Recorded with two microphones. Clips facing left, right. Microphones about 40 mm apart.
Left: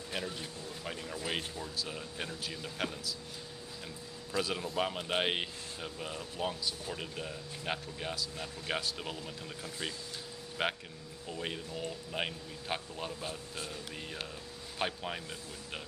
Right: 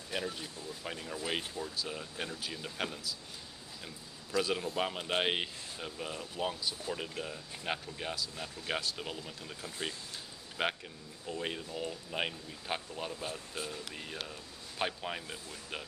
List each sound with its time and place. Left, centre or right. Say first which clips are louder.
0.1 s speech: right 2 dB; centre
4.4 s speech: right 1 dB; centre